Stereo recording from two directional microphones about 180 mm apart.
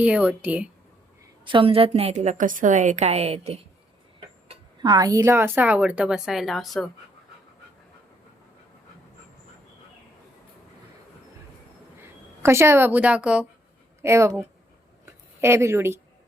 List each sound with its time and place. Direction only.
0.0 s a woman's voice: 5° right (ahead or behind)
1.5 s a woman's voice: 30° right (ahead or behind)
4.8 s a woman's voice: 20° right (ahead or behind); by 6.8 s centre (ahead or behind)
11.9 s a woman's voice: 15° right (ahead or behind)
15.0 s a sound: 15° right (ahead or behind)